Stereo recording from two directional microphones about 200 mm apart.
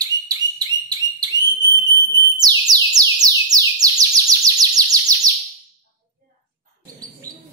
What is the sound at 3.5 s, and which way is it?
Chirp, 20° right (ahead or behind).